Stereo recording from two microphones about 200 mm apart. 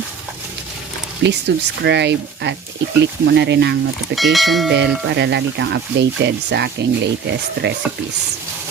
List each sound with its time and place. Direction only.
1.2 s speech: 60° right (ahead or behind)
4.1 s speech: centre (ahead or behind)
4.7 s speech: 60° right (ahead or behind)